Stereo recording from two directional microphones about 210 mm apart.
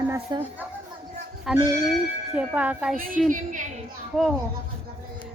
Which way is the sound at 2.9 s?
40° right (ahead or behind).